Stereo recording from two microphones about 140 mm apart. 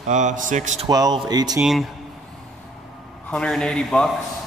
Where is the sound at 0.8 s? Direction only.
30° right (ahead or behind).